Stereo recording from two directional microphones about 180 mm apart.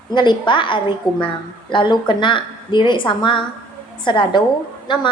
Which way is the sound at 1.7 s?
25° left (ahead or behind).